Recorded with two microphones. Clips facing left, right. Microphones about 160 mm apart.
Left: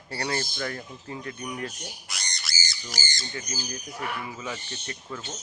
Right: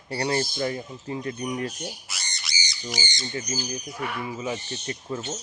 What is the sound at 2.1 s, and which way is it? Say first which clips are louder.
Squawk: even; 5° right (ahead or behind).